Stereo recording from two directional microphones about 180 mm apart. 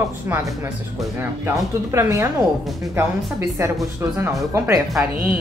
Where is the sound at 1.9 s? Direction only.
15° right (ahead or behind).